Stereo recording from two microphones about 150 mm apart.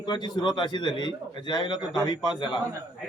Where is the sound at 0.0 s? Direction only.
30° left (ahead or behind).